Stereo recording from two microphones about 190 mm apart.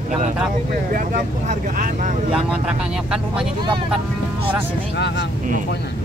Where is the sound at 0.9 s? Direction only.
45° right (ahead or behind).